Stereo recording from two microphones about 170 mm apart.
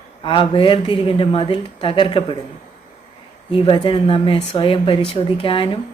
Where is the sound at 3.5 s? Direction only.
30° left (ahead or behind).